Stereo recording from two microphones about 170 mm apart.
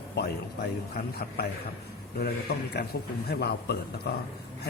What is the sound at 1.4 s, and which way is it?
A man's voice, 65° left (ahead or behind).